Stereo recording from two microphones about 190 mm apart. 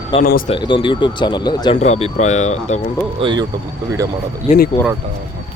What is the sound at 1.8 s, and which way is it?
Speech, 35° left (ahead or behind).